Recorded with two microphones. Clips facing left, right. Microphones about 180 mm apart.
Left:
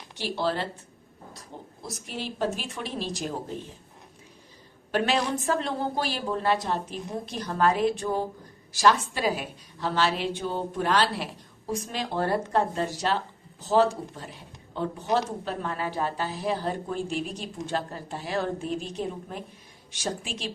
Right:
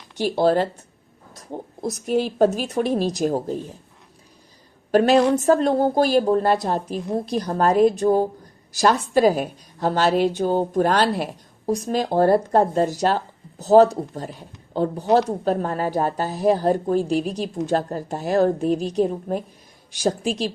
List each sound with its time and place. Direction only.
0.2 s a woman's voice: 45° right (ahead or behind)
4.9 s a woman's voice: 40° right (ahead or behind)